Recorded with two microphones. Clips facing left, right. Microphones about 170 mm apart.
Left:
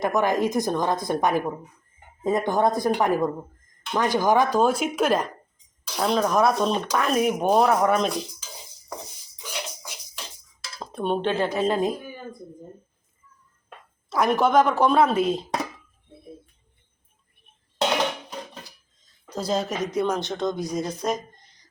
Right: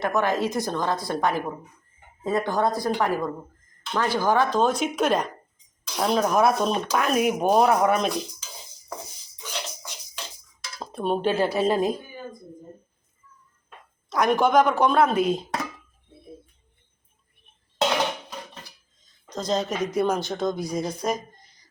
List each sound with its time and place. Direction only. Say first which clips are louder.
0.0 s a woman's voice: left 2 dB; 15° left (ahead or behind); by 8.2 s centre (ahead or behind)
9.5 s music: even; 10° left (ahead or behind)
10.8 s speech: even; 5° right (ahead or behind)
14.1 s speech: even; 5° left (ahead or behind)
19.3 s speech: even; 5° left (ahead or behind)